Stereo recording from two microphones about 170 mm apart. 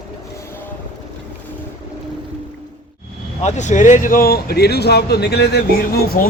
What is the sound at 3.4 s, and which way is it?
Speech, 40° left (ahead or behind).